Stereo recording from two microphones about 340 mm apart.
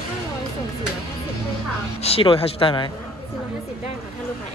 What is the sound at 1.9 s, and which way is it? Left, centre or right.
Speech, centre.